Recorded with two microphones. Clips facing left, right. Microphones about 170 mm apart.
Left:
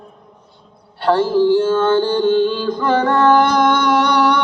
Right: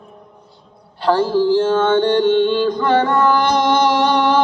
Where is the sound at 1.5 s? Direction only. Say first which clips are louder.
Even; 5° left (ahead or behind).